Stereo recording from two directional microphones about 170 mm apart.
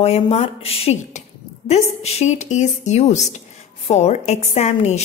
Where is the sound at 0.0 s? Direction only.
40° left (ahead or behind).